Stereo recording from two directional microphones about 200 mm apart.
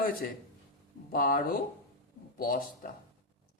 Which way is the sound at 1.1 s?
40° left (ahead or behind).